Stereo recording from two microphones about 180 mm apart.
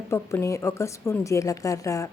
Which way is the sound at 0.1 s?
15° left (ahead or behind).